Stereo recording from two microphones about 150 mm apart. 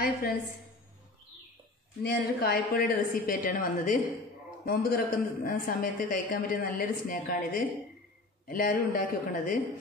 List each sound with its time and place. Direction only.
0.0 s a woman's voice: 85° left
2.0 s speech: 90° left; by 9.6 s 65° left (ahead or behind)